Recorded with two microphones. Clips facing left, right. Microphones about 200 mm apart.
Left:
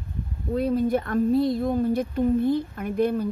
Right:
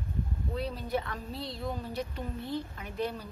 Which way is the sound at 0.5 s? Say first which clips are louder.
Left 11 dB; 50° left (ahead or behind).